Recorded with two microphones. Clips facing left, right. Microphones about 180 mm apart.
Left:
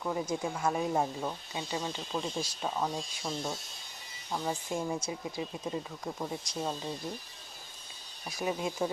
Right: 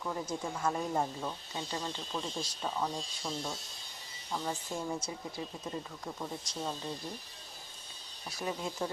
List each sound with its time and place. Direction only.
0.0 s speech: 10° left (ahead or behind)
2.7 s speech: 25° left (ahead or behind)
8.3 s speech: 15° left (ahead or behind)